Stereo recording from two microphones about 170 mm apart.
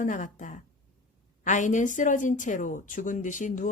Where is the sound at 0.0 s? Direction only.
45° left (ahead or behind).